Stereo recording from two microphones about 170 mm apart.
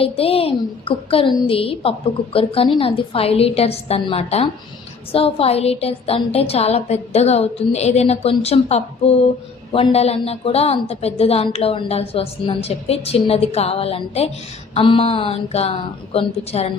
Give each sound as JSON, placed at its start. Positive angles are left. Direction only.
{"t": 0.0, "sound": "a woman's voice", "side_deg": 35}